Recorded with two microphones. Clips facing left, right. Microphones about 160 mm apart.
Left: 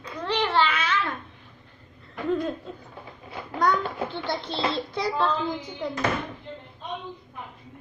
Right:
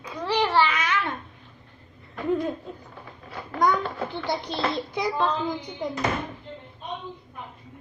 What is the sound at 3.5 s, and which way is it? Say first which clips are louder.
A child's voice: right 1 dB; 15° right (ahead or behind).